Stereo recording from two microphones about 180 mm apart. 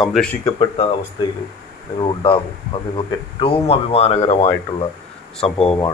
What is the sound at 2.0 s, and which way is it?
Speech, 30° left (ahead or behind).